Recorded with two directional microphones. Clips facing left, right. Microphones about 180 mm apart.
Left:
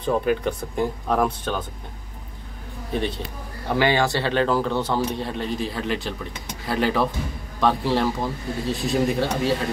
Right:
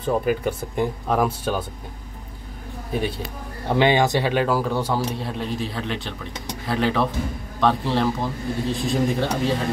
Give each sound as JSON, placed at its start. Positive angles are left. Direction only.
{"t": 0.0, "sound": "speech", "side_deg": -5}
{"t": 2.9, "sound": "speech", "side_deg": -10}
{"t": 3.6, "sound": "speech", "side_deg": -20}